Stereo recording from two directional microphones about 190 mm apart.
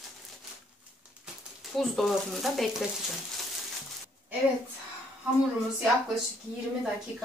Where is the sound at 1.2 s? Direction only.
Centre (ahead or behind).